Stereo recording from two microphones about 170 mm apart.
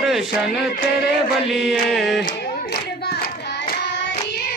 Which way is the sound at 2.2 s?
70° left (ahead or behind).